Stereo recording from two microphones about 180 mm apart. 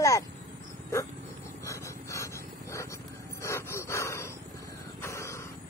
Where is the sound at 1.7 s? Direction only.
15° left (ahead or behind).